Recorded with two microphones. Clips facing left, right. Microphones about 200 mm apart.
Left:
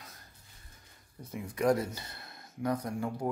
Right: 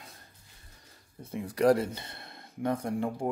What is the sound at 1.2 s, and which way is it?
Speech, 30° right (ahead or behind).